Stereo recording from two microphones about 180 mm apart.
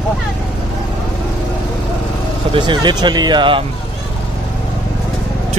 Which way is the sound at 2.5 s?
25° right (ahead or behind).